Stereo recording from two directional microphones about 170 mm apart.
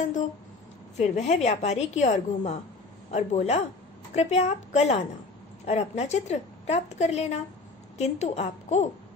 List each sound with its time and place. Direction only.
0.0 s a woman's voice: 45° left (ahead or behind)